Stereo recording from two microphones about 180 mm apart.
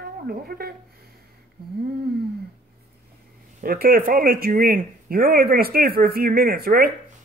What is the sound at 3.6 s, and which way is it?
Speech, 55° right (ahead or behind).